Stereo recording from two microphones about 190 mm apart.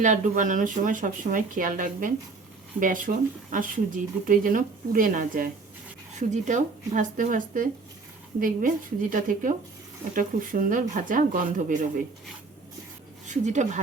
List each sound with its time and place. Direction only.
0.0 s speech: 40° right (ahead or behind)
13.2 s speech: 40° right (ahead or behind)